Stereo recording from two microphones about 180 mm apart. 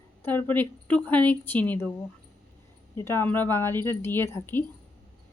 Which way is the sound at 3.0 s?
15° left (ahead or behind).